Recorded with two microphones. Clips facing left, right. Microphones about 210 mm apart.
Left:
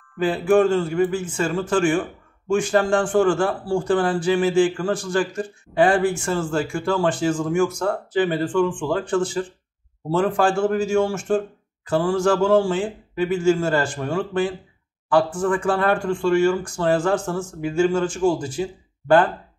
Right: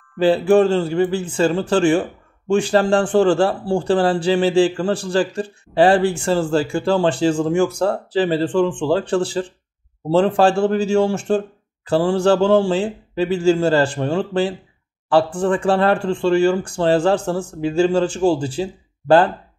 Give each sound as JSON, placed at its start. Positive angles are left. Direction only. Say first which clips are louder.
{"t": 0.2, "sound": "a man's voice", "louder": "right 4 dB", "side_deg": -30}